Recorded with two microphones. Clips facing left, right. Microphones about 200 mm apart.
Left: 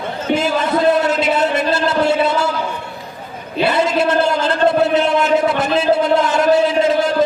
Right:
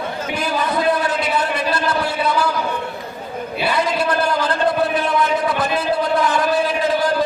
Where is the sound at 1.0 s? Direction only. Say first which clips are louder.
Left 4 dB; 25° left (ahead or behind).